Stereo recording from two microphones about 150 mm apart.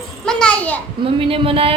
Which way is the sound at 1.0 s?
40° right (ahead or behind).